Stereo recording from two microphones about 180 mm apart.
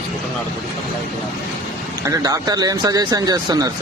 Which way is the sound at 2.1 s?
20° right (ahead or behind).